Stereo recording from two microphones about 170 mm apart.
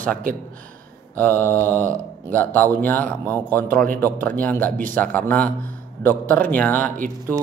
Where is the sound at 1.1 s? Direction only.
10° left (ahead or behind).